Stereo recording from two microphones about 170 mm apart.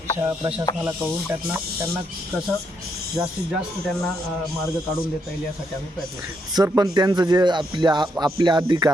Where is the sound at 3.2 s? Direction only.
15° right (ahead or behind).